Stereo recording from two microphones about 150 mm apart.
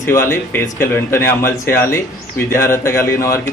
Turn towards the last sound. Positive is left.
turn(degrees=20)  # may be behind; listen again after turning